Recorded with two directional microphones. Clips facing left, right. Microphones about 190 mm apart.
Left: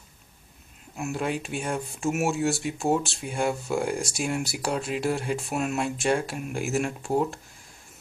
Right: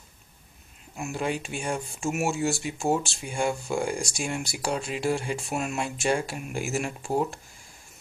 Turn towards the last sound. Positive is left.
turn(degrees=0)  # may be behind; listen again after turning